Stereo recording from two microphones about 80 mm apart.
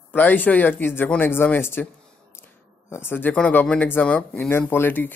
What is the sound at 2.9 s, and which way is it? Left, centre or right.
Speech, left.